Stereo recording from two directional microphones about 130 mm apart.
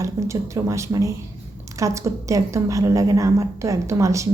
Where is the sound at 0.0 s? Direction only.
25° right (ahead or behind).